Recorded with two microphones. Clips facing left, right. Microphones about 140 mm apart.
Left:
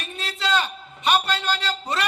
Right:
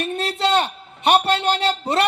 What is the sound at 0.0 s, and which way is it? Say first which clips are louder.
A man's voice: right 8 dB; 55° right (ahead or behind).